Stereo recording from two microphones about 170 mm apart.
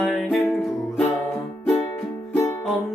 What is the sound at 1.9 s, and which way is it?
Music, 15° left (ahead or behind).